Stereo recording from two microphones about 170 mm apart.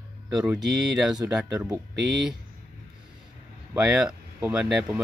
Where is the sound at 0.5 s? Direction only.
5° right (ahead or behind).